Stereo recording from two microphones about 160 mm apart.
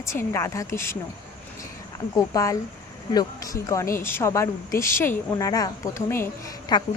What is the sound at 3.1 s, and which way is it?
Speech, 25° left (ahead or behind).